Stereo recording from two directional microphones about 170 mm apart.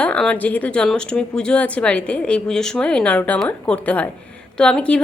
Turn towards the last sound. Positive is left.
turn(degrees=5)  # may be behind; listen again after turning